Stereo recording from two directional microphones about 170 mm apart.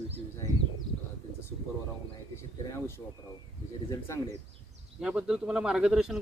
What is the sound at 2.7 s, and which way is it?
Speech, 15° left (ahead or behind).